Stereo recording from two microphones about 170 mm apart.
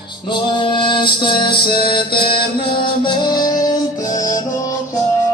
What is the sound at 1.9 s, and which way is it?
Mantra, 30° left (ahead or behind).